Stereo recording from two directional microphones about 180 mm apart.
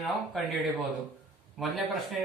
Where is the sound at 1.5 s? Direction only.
Centre (ahead or behind).